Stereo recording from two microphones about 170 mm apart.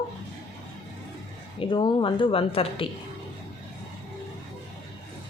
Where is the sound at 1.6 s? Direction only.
30° left (ahead or behind).